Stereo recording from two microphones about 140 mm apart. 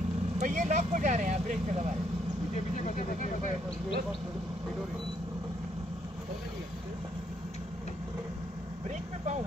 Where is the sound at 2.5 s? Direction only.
60° left (ahead or behind).